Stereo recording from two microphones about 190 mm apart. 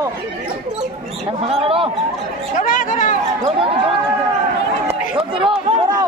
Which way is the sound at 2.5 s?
45° left (ahead or behind).